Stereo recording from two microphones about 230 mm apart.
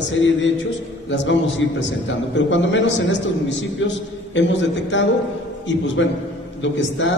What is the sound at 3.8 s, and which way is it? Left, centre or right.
A man's voice, left.